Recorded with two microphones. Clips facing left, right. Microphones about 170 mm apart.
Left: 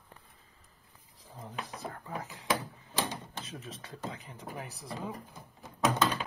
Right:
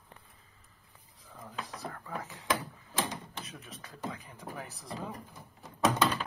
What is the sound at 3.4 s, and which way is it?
Speech, 30° left (ahead or behind).